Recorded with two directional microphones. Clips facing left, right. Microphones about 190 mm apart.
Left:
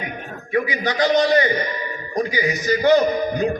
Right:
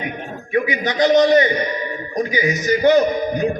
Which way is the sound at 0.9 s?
20° right (ahead or behind).